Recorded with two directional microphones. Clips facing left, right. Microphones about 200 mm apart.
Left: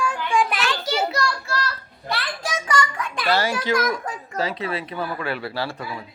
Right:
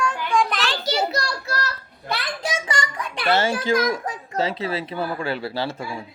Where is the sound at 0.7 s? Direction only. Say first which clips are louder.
Even; 35° right (ahead or behind).